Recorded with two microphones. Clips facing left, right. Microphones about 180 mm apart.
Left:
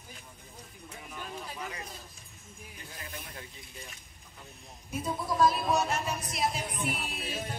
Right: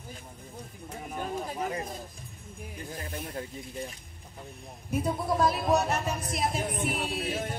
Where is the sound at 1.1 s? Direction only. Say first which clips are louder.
Right 8 dB; 45° right (ahead or behind).